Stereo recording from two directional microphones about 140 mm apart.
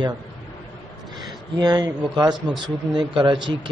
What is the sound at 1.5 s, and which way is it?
Speech, 30° right (ahead or behind).